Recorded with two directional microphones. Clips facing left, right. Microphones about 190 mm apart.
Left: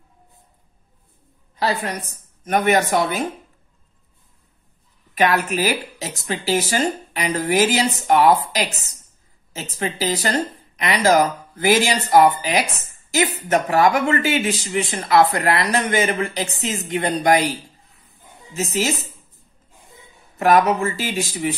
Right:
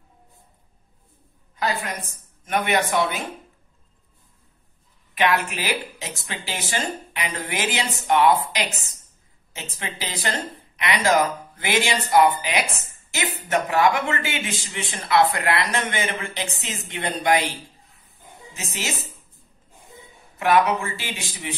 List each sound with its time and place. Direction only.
1.6 s a woman's voice: 35° left (ahead or behind)
5.1 s speech: 40° left (ahead or behind)
18.6 s speech: 40° left (ahead or behind)
20.3 s speech: 40° left (ahead or behind)